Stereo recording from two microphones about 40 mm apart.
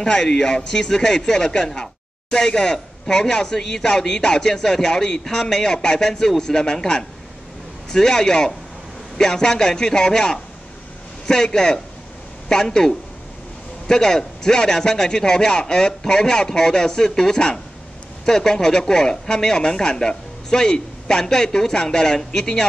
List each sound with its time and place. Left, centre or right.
0.0 s speech: centre